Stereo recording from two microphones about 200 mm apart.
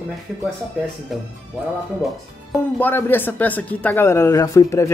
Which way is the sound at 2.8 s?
10° left (ahead or behind).